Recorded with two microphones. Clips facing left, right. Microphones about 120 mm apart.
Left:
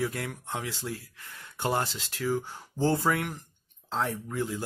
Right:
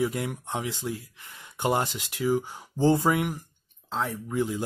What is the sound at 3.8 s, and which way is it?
Speech, centre (ahead or behind).